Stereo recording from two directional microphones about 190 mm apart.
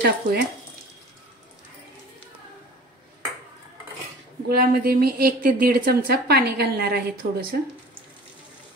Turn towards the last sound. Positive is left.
turn(degrees=-55)  # may be behind; listen again after turning